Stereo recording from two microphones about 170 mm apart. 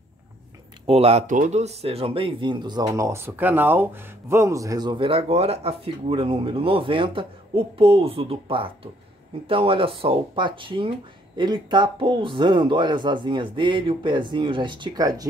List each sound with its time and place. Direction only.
0.8 s speech: 35° right (ahead or behind); by 15.2 s 20° right (ahead or behind)